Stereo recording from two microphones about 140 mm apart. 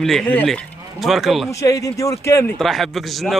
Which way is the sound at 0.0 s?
5° left (ahead or behind).